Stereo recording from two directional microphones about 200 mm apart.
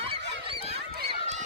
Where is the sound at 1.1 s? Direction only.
35° right (ahead or behind).